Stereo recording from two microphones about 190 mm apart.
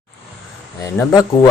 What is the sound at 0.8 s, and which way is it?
Speech, 20° left (ahead or behind).